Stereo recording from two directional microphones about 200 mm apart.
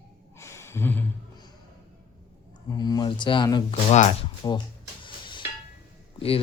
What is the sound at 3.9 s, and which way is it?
Speech, 35° left (ahead or behind).